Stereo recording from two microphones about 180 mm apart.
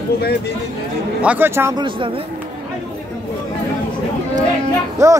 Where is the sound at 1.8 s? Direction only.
30° right (ahead or behind).